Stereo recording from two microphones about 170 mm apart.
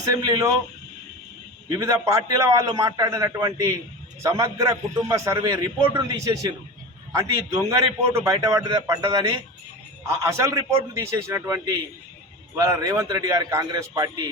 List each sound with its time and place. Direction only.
0.0 s a man's voice: 20° right (ahead or behind)
1.8 s a man's voice: 20° right (ahead or behind)